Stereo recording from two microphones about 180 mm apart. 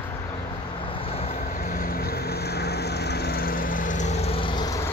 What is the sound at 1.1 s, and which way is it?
Vehicle, 35° left (ahead or behind).